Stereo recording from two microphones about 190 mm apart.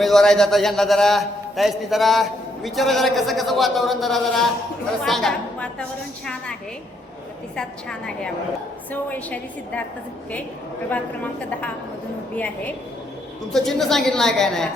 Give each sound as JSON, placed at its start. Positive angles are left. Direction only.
{"t": 0.0, "sound": "a man's voice", "side_deg": 0}
{"t": 10.8, "sound": "a woman's voice", "side_deg": 10}
{"t": 13.5, "sound": "a man's voice", "side_deg": 0}